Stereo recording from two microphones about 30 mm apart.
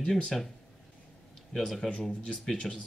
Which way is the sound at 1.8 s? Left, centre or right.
Centre.